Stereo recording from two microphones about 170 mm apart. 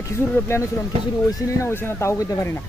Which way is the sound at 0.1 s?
15° left (ahead or behind).